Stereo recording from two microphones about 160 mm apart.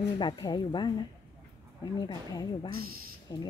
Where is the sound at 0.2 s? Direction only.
25° left (ahead or behind).